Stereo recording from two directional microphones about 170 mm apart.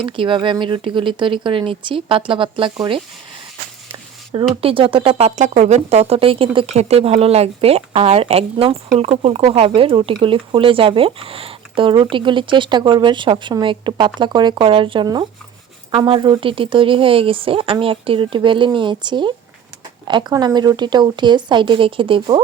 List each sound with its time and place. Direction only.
0.0 s speech: 30° right (ahead or behind)
4.3 s speech: 30° right (ahead or behind)